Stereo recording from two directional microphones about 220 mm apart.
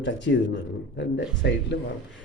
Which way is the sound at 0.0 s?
55° left (ahead or behind).